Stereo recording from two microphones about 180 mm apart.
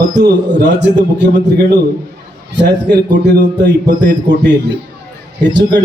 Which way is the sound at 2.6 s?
70° right (ahead or behind).